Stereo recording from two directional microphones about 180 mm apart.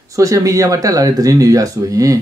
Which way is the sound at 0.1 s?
15° right (ahead or behind).